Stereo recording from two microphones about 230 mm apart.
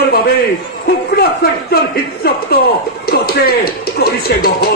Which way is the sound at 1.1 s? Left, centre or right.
Left.